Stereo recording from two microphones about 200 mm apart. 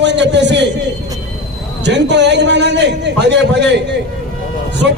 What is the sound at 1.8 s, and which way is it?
A man's voice, 60° right (ahead or behind).